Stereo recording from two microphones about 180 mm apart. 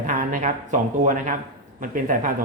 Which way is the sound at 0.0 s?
45° right (ahead or behind).